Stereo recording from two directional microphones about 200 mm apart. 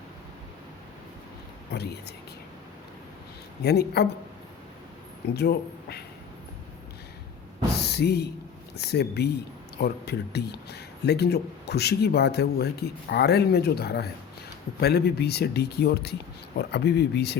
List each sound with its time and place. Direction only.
1.7 s a man's voice: 55° left (ahead or behind)
3.6 s a man's voice: 55° left (ahead or behind)
5.3 s a man's voice: 55° left (ahead or behind)
7.9 s a man's voice: 55° left (ahead or behind)